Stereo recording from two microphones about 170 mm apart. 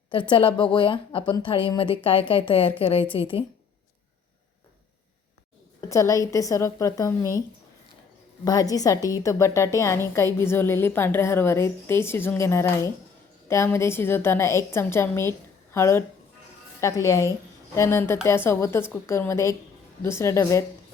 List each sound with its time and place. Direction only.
0.1 s a woman's voice: 30° left (ahead or behind)
5.9 s a woman's voice: 20° left (ahead or behind)
8.4 s a woman's voice: 20° left (ahead or behind)